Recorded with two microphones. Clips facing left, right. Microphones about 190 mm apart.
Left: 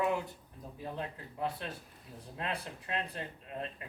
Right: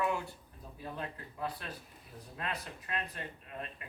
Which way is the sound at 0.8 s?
20° left (ahead or behind).